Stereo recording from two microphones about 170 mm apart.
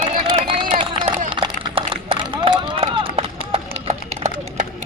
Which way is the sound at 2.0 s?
30° right (ahead or behind).